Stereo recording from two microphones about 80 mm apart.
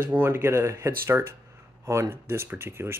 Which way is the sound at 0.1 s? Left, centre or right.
Right.